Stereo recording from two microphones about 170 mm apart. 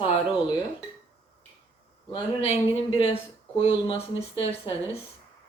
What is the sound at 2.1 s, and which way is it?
Speech, 30° left (ahead or behind).